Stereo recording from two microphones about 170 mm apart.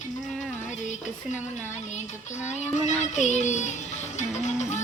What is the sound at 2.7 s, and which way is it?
A child's voice, 45° left (ahead or behind).